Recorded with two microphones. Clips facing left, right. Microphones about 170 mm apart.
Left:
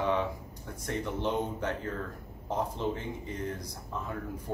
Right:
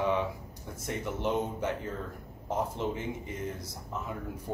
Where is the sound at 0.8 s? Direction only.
15° right (ahead or behind).